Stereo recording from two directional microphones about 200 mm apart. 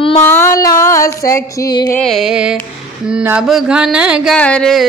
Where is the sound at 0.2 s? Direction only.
10° left (ahead or behind).